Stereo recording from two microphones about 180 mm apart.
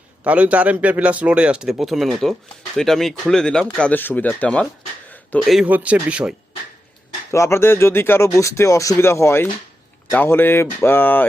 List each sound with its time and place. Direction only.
0.3 s speech: 5° right (ahead or behind)
7.3 s speech: 15° left (ahead or behind)